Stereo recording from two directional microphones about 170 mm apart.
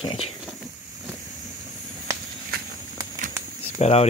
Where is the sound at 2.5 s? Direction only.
60° right (ahead or behind).